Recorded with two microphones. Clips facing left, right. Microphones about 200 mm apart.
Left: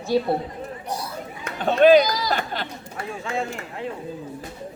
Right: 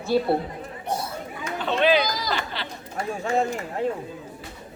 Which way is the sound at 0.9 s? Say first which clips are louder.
Right 4 dB; 25° right (ahead or behind).